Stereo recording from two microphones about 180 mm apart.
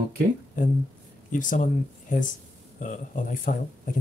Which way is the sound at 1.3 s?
45° left (ahead or behind).